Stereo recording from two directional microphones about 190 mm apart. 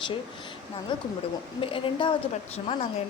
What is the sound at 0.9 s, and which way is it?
A woman's voice, 25° left (ahead or behind).